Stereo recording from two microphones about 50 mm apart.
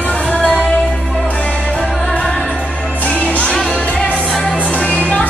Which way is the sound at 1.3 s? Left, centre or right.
Left.